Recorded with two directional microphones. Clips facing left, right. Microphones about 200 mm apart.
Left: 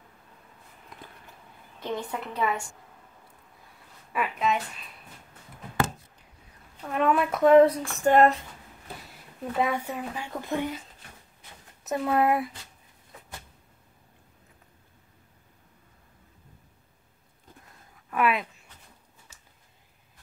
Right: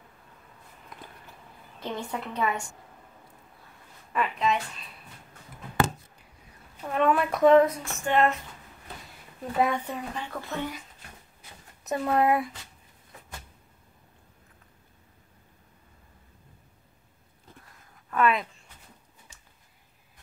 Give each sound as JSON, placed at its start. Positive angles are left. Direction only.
{"t": 1.8, "sound": "a woman's voice", "side_deg": 0}
{"t": 4.1, "sound": "a sound", "side_deg": 5}
{"t": 6.9, "sound": "a woman's voice", "side_deg": 0}
{"t": 7.6, "sound": "a sound", "side_deg": 30}
{"t": 9.6, "sound": "speech", "side_deg": 5}
{"t": 11.8, "sound": "a woman's voice", "side_deg": 0}
{"t": 18.1, "sound": "speech", "side_deg": 5}